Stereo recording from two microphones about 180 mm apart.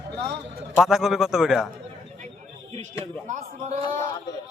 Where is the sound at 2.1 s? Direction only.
40° right (ahead or behind).